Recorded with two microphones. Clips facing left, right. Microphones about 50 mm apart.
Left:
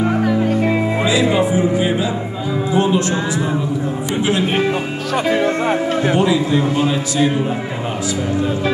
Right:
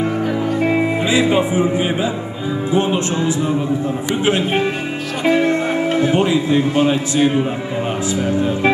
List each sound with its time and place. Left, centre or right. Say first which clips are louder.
1.0 s a man's voice: left 2 dB; right
5.3 s speech: right 2 dB; left
6.1 s a man's voice: even; right